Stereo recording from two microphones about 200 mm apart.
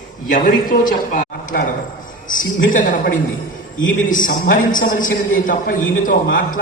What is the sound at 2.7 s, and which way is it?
Speech, 40° left (ahead or behind).